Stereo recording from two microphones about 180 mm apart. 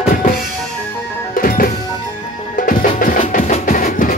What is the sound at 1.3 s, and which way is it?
Music, 50° left (ahead or behind).